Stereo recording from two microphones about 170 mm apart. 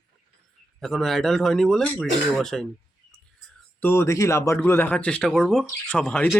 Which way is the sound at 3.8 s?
15° left (ahead or behind).